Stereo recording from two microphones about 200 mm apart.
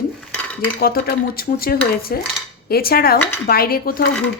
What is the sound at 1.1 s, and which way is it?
Speech, 45° left (ahead or behind).